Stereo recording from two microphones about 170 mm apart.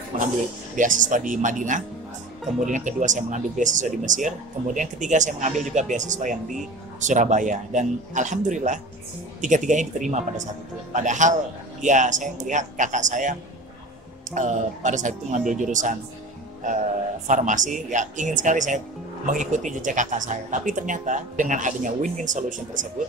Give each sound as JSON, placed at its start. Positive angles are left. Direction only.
{"t": 0.1, "sound": "music", "side_deg": -50}
{"t": 0.7, "sound": "speech", "side_deg": -50}
{"t": 17.3, "sound": "speech", "side_deg": -50}